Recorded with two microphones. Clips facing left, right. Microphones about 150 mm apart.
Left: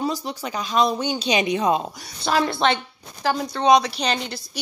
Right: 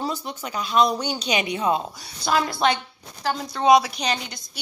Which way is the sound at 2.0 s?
5° right (ahead or behind).